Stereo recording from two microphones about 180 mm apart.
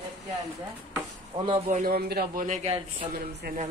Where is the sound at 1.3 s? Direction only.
30° right (ahead or behind).